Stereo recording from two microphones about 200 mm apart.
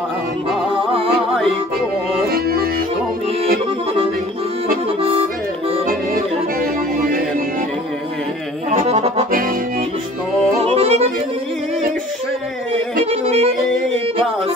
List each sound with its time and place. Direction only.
2.3 s music: 50° right (ahead or behind)
7.0 s music: 45° right (ahead or behind)
8.6 s accordion: 35° right (ahead or behind)
10.6 s music: 30° right (ahead or behind)
13.0 s music: 30° right (ahead or behind)